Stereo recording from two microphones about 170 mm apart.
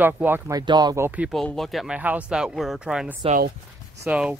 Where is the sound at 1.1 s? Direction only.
10° right (ahead or behind).